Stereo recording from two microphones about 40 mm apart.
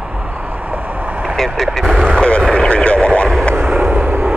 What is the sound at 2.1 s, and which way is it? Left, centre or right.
Vehicle, left.